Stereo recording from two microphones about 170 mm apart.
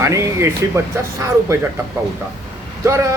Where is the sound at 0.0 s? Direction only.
20° right (ahead or behind).